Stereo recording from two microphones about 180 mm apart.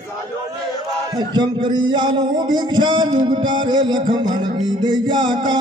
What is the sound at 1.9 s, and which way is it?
Music, 25° right (ahead or behind).